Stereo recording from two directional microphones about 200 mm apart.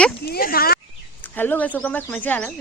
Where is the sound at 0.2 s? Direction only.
50° left (ahead or behind).